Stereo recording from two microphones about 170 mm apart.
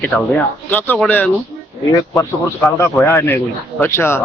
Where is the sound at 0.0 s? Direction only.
10° left (ahead or behind).